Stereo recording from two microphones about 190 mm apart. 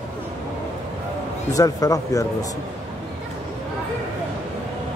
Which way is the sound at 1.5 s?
20° left (ahead or behind).